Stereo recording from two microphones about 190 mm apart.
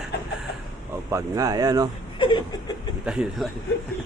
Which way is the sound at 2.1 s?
25° left (ahead or behind).